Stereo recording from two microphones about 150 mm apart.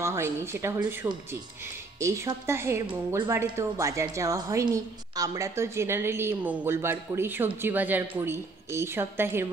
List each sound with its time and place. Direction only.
0.0 s a woman's voice: 15° right (ahead or behind)